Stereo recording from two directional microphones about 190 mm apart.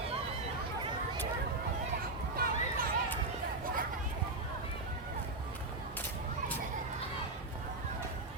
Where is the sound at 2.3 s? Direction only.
50° right (ahead or behind).